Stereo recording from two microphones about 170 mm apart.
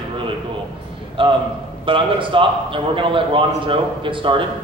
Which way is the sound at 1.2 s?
30° right (ahead or behind).